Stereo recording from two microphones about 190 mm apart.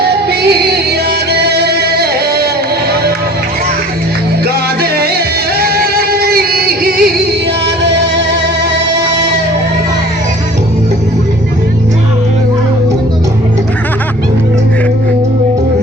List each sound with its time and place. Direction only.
0.0 s music: 55° right (ahead or behind)
4.4 s music: 55° right (ahead or behind)